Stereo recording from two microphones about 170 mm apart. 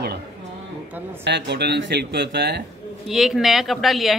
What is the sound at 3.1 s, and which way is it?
A woman's voice, centre (ahead or behind).